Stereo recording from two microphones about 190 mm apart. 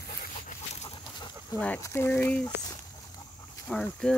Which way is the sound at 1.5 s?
5° left (ahead or behind).